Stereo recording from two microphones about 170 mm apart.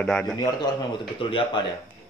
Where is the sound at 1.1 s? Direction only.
30° left (ahead or behind).